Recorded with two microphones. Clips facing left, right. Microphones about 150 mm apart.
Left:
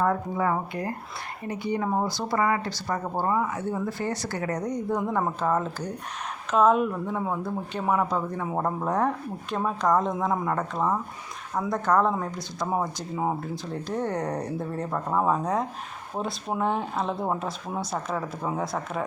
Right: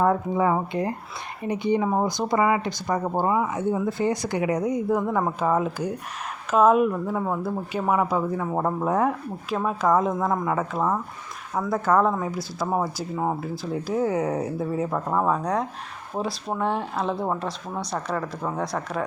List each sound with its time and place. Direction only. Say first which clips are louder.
0.0 s speech: right 4 dB; 20° right (ahead or behind); by 19.0 s centre (ahead or behind)